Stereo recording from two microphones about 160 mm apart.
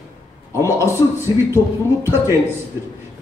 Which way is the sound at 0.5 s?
20° left (ahead or behind).